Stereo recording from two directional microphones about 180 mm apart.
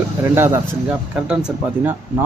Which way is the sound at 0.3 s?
15° right (ahead or behind).